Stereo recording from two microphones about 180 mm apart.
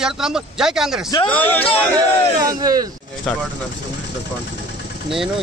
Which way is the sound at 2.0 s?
20° right (ahead or behind).